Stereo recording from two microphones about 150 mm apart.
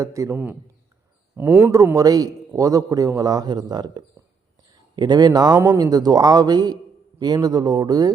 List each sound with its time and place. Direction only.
0.0 s a man's voice: 20° right (ahead or behind)
1.4 s a man's voice: 15° right (ahead or behind)
5.5 s speech: 15° right (ahead or behind)
5.8 s a man's voice: 25° right (ahead or behind)